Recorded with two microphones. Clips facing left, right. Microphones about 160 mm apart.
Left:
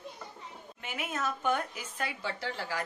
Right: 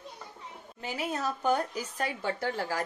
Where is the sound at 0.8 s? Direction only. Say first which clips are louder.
Right 3 dB; 35° right (ahead or behind).